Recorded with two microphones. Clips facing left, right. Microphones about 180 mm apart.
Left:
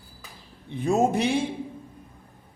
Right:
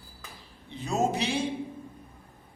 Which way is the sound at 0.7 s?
55° left (ahead or behind).